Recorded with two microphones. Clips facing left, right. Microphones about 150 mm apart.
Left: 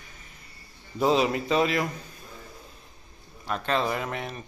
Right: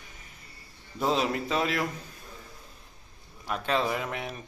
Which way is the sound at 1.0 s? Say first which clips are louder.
Left 4 dB; 5° left (ahead or behind).